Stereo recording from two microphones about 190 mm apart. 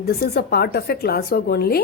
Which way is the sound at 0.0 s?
55° left (ahead or behind).